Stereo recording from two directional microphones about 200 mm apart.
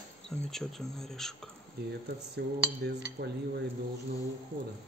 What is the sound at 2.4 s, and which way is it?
Cutlery, 50° right (ahead or behind).